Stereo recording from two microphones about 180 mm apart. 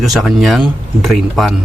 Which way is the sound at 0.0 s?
Centre (ahead or behind).